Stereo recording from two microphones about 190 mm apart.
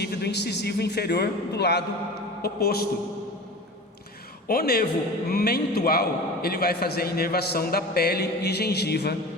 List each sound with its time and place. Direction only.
0.0 s a man's voice: 60° left (ahead or behind)
4.4 s a man's voice: 50° left (ahead or behind)